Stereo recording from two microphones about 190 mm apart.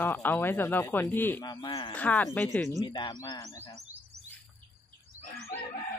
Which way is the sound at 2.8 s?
25° left (ahead or behind).